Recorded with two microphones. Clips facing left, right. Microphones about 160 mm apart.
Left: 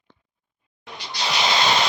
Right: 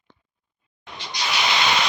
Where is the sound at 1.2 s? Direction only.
30° left (ahead or behind).